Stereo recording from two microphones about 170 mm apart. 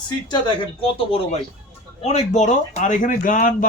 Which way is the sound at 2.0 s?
40° left (ahead or behind).